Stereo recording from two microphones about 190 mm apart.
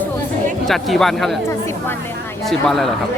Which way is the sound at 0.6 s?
Centre (ahead or behind).